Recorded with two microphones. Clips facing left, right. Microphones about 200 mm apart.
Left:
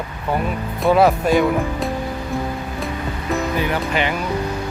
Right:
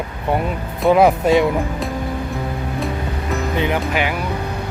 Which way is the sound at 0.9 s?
15° right (ahead or behind).